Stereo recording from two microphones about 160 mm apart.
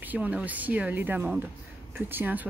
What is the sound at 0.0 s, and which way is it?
Speech, 10° right (ahead or behind).